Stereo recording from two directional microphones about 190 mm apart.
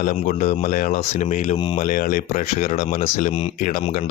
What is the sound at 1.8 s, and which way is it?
Speech, 45° left (ahead or behind).